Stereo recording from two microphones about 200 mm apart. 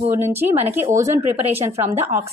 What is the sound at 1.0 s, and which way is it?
Speech, 30° right (ahead or behind).